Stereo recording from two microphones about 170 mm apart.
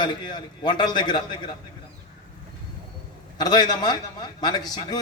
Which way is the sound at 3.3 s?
25° left (ahead or behind).